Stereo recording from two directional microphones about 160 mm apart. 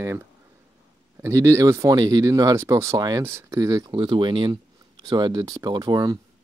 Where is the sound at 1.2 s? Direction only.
20° right (ahead or behind).